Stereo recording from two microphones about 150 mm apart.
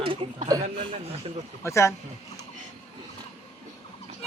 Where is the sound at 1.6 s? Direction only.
20° left (ahead or behind).